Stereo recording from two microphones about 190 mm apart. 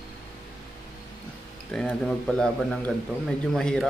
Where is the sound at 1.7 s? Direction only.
5° left (ahead or behind).